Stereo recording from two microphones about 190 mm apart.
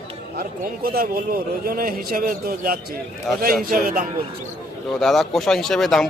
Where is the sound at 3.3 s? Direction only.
Centre (ahead or behind).